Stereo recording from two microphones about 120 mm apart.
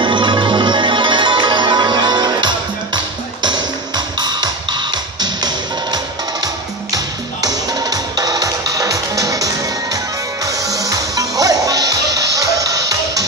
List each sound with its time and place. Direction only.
0.0 s music: 40° right (ahead or behind)
7.4 s music: 30° right (ahead or behind)